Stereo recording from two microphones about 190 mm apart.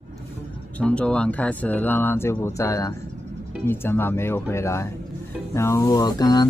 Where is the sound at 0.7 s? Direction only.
5° left (ahead or behind).